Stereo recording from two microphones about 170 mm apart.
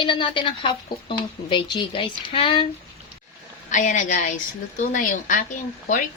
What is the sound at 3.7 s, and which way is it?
Speech, 50° left (ahead or behind).